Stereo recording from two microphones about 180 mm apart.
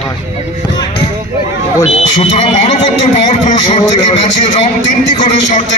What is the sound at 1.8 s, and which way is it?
Speech, 40° left (ahead or behind).